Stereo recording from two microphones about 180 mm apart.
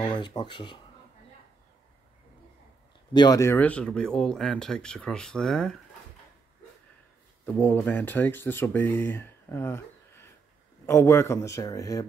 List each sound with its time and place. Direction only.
0.0 s speech: 25° left (ahead or behind)
3.1 s speech: 20° left (ahead or behind); by 5.8 s 5° left (ahead or behind)
7.4 s speech: 10° left (ahead or behind)